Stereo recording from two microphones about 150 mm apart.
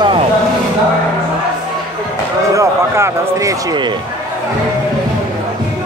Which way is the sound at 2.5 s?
20° right (ahead or behind).